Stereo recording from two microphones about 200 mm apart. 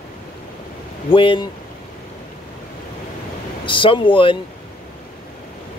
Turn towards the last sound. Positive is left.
turn(degrees=25)  # may be behind; listen again after turning